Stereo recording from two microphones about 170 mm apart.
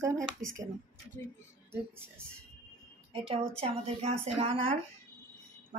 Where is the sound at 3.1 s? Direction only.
30° right (ahead or behind).